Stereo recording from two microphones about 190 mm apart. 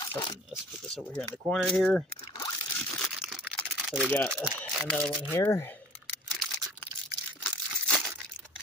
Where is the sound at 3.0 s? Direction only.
Centre (ahead or behind).